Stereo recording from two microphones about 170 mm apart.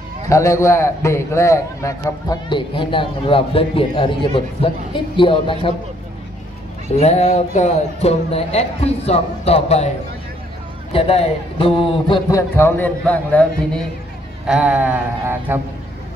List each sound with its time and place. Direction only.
0.3 s a man's voice: 15° left (ahead or behind)
7.0 s speech: 40° left (ahead or behind)
10.9 s speech: 35° left (ahead or behind)
12.3 s a man's voice: 15° left (ahead or behind)
14.5 s a sound: 5° right (ahead or behind)